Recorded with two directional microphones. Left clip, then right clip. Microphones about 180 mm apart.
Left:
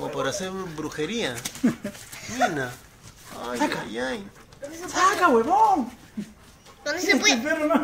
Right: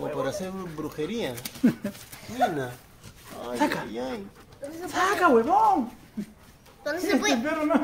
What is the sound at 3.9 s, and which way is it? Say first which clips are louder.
Speech: left 4 dB; 5° right (ahead or behind).